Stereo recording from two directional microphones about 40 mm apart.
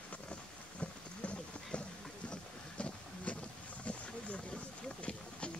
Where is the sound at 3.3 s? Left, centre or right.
Left.